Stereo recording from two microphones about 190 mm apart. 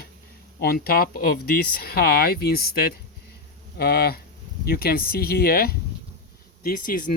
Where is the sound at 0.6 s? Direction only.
55° left (ahead or behind).